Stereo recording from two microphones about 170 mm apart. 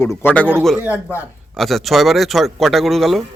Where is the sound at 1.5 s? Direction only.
Centre (ahead or behind).